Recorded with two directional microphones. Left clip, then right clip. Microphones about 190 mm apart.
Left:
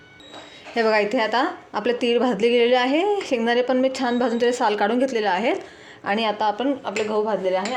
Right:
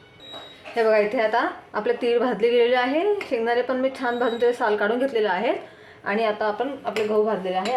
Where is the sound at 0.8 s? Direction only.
40° left (ahead or behind).